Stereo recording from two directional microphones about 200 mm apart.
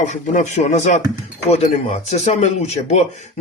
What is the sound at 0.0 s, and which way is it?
Speech, 35° left (ahead or behind).